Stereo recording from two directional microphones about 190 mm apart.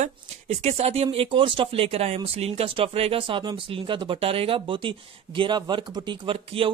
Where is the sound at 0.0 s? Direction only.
35° right (ahead or behind).